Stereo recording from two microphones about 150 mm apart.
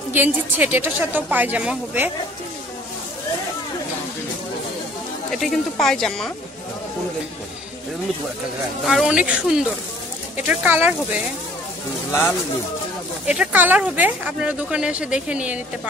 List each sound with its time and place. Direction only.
0.1 s speech: 10° right (ahead or behind)
5.3 s a woman's voice: centre (ahead or behind)
8.8 s a woman's voice: 5° right (ahead or behind)
12.1 s speech: 15° left (ahead or behind)
13.3 s speech: 10° right (ahead or behind)